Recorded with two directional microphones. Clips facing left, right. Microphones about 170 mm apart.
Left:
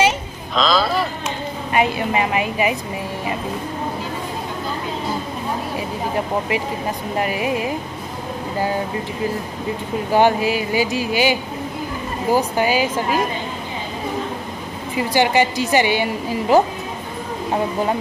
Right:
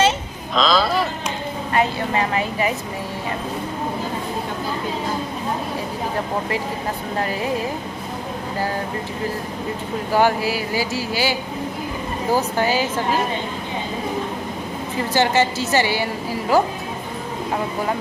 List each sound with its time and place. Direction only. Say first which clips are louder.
0.6 s speech: even; centre (ahead or behind)
1.7 s a woman's voice: left 2 dB; 15° left (ahead or behind)
7.2 s a woman's voice: left 2 dB; 15° left (ahead or behind)
10.1 s a woman's voice: left 2 dB; 20° left (ahead or behind)
15.0 s a woman's voice: left 2 dB; 15° left (ahead or behind)